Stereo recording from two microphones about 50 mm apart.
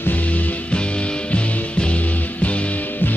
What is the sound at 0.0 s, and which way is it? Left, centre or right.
Music, left.